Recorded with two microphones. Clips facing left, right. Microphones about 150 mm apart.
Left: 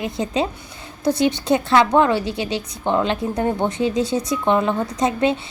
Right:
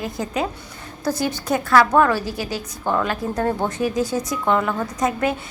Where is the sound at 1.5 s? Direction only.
25° left (ahead or behind).